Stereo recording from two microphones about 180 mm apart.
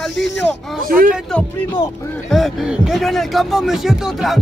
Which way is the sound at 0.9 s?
50° right (ahead or behind).